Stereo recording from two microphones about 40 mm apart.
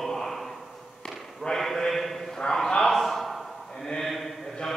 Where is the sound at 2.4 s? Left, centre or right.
Centre.